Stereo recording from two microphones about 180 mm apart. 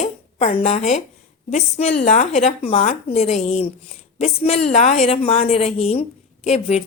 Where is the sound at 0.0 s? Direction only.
40° left (ahead or behind).